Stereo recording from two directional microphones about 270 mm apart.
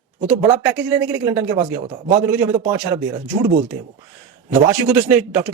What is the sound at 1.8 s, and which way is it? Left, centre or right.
Speech, right.